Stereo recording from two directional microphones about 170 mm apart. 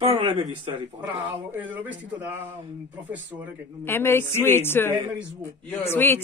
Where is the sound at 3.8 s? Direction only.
15° left (ahead or behind).